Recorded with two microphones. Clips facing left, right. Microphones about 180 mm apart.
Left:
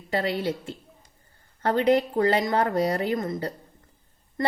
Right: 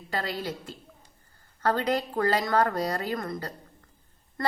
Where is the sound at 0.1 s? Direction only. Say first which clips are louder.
Left 6 dB; 25° left (ahead or behind).